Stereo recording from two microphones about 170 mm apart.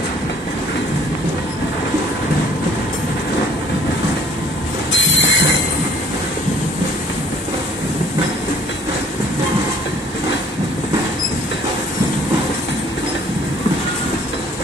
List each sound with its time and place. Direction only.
4.9 s train: 90° left